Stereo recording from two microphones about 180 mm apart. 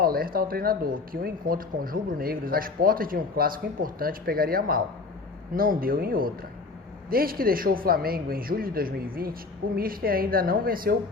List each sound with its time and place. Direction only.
0.0 s a man's voice: 55° right (ahead or behind)